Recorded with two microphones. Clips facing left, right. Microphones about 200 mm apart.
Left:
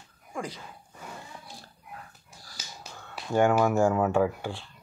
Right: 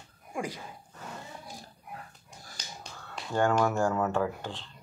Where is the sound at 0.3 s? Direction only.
15° right (ahead or behind).